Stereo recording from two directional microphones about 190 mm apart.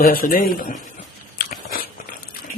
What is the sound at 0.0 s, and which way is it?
Speech, 50° left (ahead or behind).